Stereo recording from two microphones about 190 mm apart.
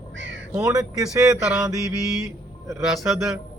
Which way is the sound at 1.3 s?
5° right (ahead or behind).